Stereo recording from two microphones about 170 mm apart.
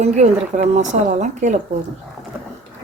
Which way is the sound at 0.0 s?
45° right (ahead or behind).